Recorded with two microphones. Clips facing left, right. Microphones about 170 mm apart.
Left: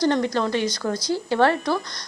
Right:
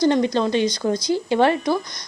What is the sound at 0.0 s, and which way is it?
A woman's voice, 15° right (ahead or behind).